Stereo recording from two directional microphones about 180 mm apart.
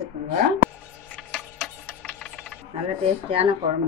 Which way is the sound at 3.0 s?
30° right (ahead or behind).